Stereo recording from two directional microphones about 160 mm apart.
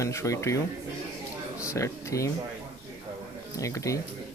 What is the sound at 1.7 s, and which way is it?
Speech, 20° left (ahead or behind).